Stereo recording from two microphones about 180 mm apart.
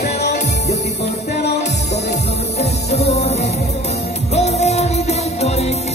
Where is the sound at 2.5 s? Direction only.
35° left (ahead or behind).